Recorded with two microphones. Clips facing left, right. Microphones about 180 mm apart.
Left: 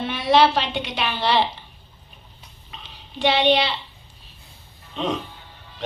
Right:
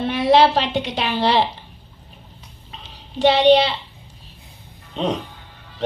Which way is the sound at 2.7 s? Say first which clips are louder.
Right 4 dB; 40° right (ahead or behind).